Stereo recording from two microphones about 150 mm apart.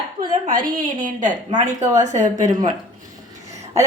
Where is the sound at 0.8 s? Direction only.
60° right (ahead or behind).